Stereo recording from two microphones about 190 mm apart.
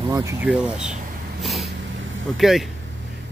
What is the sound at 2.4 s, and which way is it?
Speech, centre (ahead or behind).